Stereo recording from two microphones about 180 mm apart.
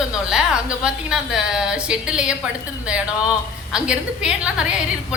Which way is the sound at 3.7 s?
5° right (ahead or behind).